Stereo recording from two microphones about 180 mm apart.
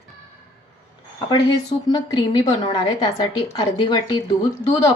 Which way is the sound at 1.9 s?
25° left (ahead or behind).